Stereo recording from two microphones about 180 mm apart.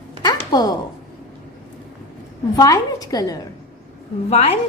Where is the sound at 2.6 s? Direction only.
20° left (ahead or behind).